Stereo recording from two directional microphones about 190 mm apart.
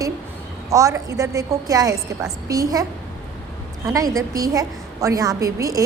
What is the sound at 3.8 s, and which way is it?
A woman's voice, 20° right (ahead or behind).